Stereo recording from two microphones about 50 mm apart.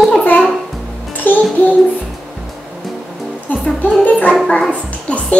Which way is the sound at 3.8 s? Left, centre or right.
Left.